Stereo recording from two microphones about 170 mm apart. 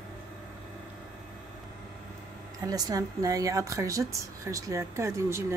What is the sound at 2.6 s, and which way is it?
A woman's voice, 20° right (ahead or behind).